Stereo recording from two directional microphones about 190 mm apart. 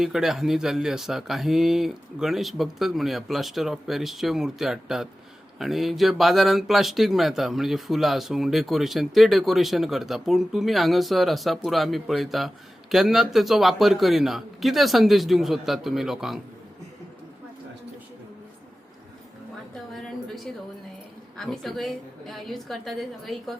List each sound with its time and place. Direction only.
0.0 s speech: centre (ahead or behind)
19.7 s a sound: centre (ahead or behind)
21.3 s speech: centre (ahead or behind)